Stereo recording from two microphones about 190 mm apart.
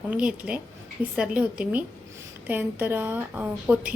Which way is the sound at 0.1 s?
5° right (ahead or behind).